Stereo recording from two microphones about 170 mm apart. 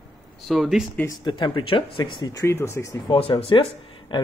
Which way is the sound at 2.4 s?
15° left (ahead or behind).